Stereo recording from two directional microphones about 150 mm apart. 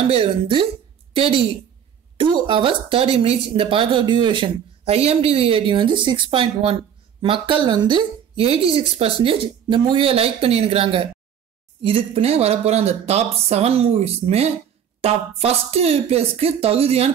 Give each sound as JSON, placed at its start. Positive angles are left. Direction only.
{"t": 0.1, "sound": "a man's voice", "side_deg": -35}